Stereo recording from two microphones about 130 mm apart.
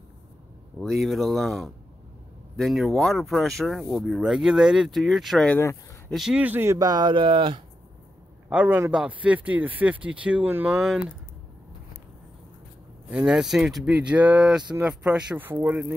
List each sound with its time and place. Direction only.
0.7 s speech: centre (ahead or behind)
5.5 s speech: 20° left (ahead or behind)
6.0 s speech: centre (ahead or behind)
6.4 s speech: 15° right (ahead or behind); by 7.6 s 40° right (ahead or behind)
8.5 s speech: 10° right (ahead or behind)
10.8 s speech: 5° right (ahead or behind)
13.1 s speech: 5° right (ahead or behind)